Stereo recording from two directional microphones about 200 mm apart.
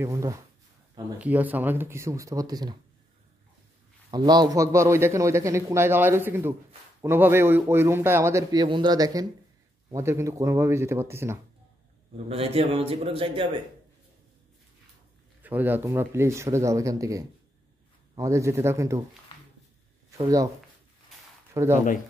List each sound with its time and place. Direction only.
0.0 s a man's voice: 15° right (ahead or behind)
4.1 s a man's voice: 20° right (ahead or behind)
12.3 s a man's voice: 30° right (ahead or behind)
15.4 s a man's voice: 10° right (ahead or behind)
20.1 s speech: 15° right (ahead or behind)
21.5 s a man's voice: 15° right (ahead or behind)